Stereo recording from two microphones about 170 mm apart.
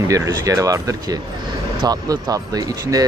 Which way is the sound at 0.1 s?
20° right (ahead or behind).